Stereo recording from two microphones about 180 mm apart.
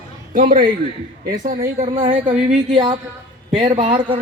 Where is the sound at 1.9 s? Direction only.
30° right (ahead or behind).